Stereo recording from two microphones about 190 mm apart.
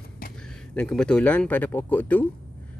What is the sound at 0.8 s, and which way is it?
A man's voice, 5° left (ahead or behind).